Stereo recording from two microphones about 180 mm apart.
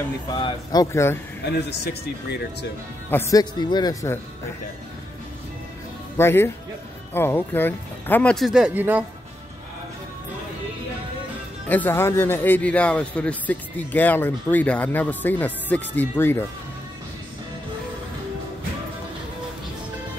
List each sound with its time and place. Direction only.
0.3 s speech: 25° left (ahead or behind)
3.1 s a man's voice: 15° left (ahead or behind)
6.1 s a man's voice: 15° left (ahead or behind); by 9.0 s 10° right (ahead or behind)
11.7 s a man's voice: 10° left (ahead or behind)